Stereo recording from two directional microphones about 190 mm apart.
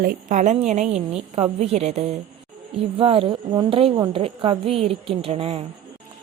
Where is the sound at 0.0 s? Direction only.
50° right (ahead or behind).